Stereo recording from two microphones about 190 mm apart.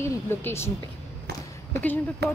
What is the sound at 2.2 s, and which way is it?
Speech, 60° right (ahead or behind).